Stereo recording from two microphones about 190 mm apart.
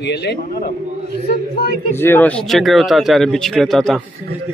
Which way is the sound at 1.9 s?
10° left (ahead or behind).